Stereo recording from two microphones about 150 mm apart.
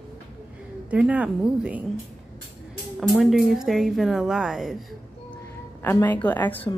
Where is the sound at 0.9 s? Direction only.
10° right (ahead or behind).